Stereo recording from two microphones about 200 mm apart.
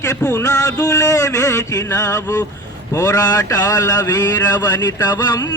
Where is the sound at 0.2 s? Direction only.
10° left (ahead or behind).